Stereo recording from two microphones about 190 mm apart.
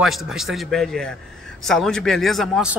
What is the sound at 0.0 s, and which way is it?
Speech, centre (ahead or behind).